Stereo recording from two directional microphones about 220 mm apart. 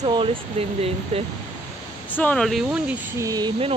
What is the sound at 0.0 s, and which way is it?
Speech, 20° right (ahead or behind).